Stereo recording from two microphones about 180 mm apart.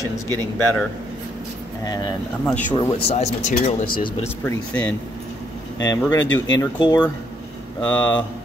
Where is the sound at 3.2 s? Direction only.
40° left (ahead or behind).